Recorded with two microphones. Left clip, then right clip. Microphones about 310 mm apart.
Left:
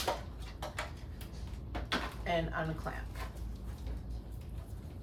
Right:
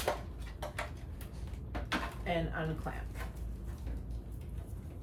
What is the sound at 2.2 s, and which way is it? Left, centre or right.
Speech, left.